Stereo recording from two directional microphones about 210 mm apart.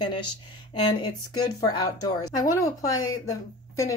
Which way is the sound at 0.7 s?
20° left (ahead or behind).